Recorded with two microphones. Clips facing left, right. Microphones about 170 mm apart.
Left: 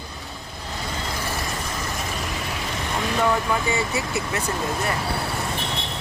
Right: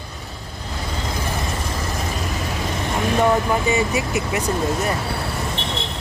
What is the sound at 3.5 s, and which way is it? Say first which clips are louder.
Speech: right 4 dB; 20° right (ahead or behind).